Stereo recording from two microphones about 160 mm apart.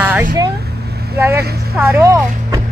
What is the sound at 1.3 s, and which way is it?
Speech, 80° right.